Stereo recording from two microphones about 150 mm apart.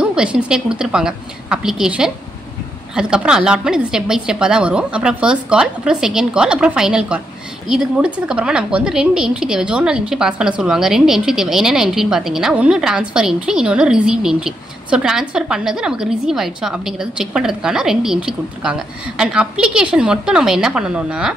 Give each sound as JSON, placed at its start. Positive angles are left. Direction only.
{"t": 0.0, "sound": "a woman's voice", "side_deg": -5}